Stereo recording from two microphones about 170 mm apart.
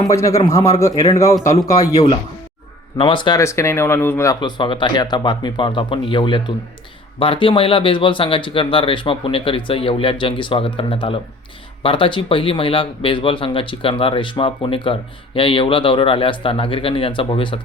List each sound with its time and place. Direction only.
0.1 s speech: 20° left (ahead or behind)
3.0 s speech: 30° left (ahead or behind)
4.4 s speech: 30° left (ahead or behind)